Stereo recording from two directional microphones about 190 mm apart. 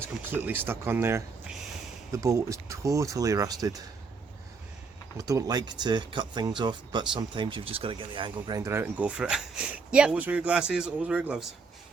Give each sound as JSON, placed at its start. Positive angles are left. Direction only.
{"t": 0.3, "sound": "speech", "side_deg": -10}
{"t": 5.1, "sound": "speech", "side_deg": -15}